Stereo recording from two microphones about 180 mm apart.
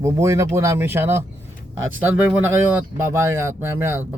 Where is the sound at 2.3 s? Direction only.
10° right (ahead or behind).